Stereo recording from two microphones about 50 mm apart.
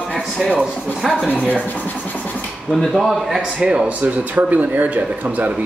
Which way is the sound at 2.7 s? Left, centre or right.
Centre.